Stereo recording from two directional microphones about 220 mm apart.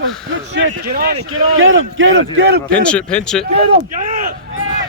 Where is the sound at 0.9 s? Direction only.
40° right (ahead or behind).